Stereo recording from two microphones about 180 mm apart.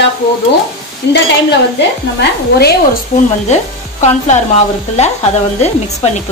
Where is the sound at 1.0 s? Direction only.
65° left (ahead or behind).